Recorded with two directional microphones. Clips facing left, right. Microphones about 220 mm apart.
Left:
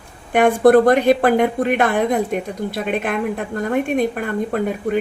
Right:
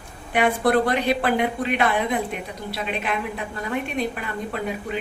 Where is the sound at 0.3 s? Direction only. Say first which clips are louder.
Left 8 dB; 50° left (ahead or behind).